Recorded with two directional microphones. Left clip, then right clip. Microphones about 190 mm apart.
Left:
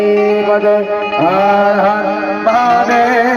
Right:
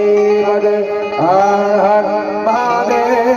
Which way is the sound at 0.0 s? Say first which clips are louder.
Even; 35° left (ahead or behind).